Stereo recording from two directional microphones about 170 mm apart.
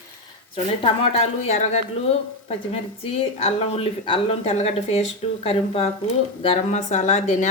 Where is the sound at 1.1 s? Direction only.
40° left (ahead or behind).